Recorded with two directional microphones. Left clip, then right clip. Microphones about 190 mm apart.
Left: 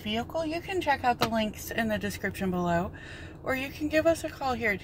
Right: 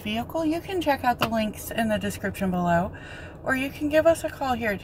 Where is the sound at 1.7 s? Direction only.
5° right (ahead or behind).